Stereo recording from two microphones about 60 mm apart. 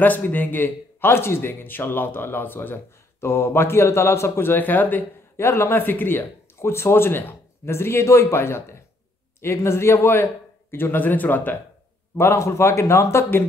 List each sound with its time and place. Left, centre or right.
0.0 s a man's voice: left
4.5 s a man's voice: left
5.4 s speech: left
5.9 s a man's voice: left
12.2 s speech: left